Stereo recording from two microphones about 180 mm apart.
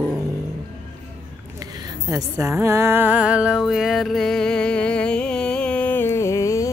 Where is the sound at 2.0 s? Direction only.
20° right (ahead or behind); by 6.7 s 15° left (ahead or behind).